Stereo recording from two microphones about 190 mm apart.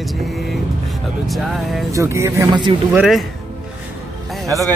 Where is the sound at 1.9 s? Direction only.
15° right (ahead or behind).